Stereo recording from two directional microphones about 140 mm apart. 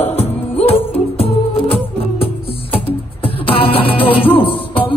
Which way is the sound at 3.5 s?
40° left (ahead or behind).